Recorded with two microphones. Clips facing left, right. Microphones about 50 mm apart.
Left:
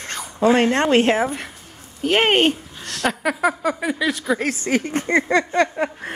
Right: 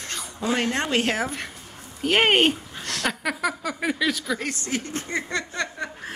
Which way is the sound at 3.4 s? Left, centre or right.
Left.